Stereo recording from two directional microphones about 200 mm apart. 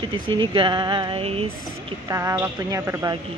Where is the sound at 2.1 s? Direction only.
15° right (ahead or behind).